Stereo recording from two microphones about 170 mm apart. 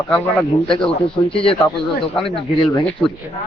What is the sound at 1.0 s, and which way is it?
Speech, 30° left (ahead or behind).